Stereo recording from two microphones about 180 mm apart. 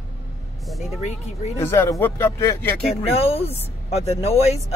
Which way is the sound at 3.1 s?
35° left (ahead or behind).